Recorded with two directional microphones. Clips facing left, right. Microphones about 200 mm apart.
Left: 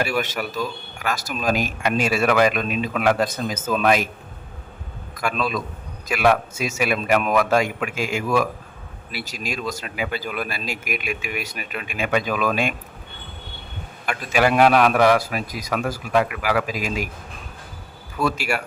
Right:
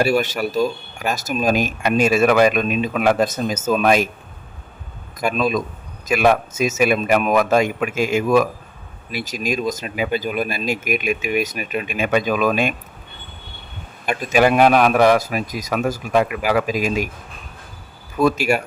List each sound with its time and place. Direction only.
0.0 s speech: 30° right (ahead or behind)
5.3 s a man's voice: 15° right (ahead or behind)
14.1 s speech: 20° right (ahead or behind)
18.2 s speech: 20° right (ahead or behind)